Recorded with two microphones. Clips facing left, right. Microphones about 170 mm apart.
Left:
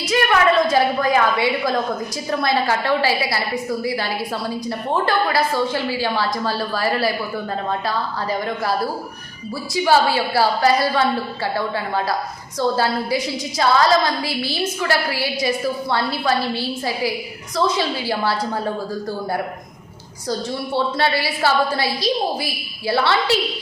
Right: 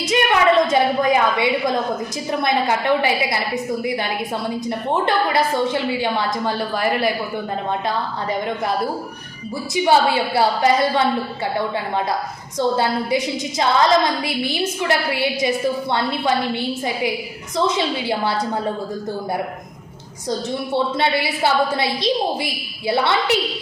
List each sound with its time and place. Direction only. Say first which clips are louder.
0.0 s a woman's voice: even; 25° right (ahead or behind)
8.4 s a woman's voice: even; 20° right (ahead or behind)
20.7 s a woman's voice: even; 20° right (ahead or behind)